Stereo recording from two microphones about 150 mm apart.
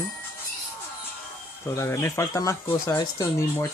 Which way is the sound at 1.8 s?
20° left (ahead or behind).